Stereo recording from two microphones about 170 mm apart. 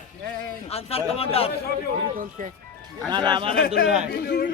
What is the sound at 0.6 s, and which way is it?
Speech, 35° left (ahead or behind).